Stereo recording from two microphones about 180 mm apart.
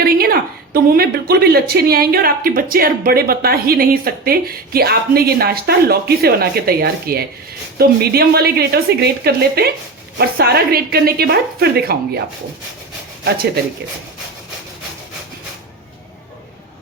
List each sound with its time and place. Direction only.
0.0 s speech: 55° right (ahead or behind)
13.2 s speech: 55° right (ahead or behind)